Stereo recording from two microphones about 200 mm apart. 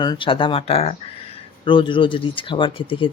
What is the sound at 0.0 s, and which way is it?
Speech, 25° left (ahead or behind).